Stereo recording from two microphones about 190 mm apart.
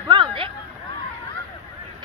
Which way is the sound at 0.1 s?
25° right (ahead or behind).